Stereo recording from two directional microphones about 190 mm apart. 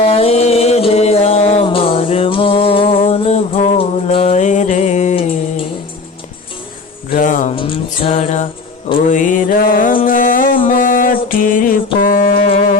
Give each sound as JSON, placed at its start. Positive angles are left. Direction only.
{"t": 0.0, "sound": "music", "side_deg": 30}
{"t": 7.1, "sound": "music", "side_deg": 40}
{"t": 7.5, "sound": "music", "side_deg": 30}